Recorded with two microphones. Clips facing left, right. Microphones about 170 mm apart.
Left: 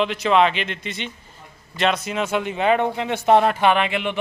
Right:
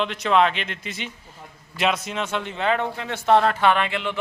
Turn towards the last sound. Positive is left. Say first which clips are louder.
# left 2 dB
turn(degrees=15)  # may be behind; listen again after turning